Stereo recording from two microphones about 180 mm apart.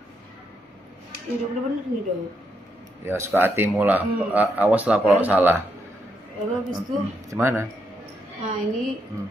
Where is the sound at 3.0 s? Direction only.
10° right (ahead or behind).